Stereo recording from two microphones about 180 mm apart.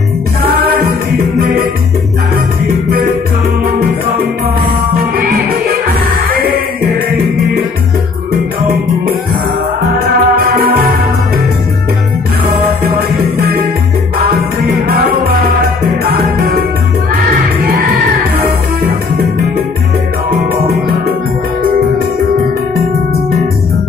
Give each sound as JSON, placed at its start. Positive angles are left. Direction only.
{"t": 5.2, "sound": "music", "side_deg": -60}
{"t": 9.9, "sound": "music", "side_deg": -55}
{"t": 14.7, "sound": "music", "side_deg": -55}